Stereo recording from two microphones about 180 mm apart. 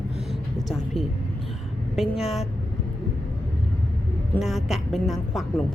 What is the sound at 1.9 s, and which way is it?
Speech, centre (ahead or behind).